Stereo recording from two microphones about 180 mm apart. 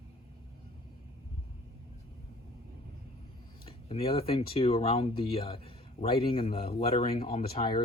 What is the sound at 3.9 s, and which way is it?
Speech, 35° left (ahead or behind).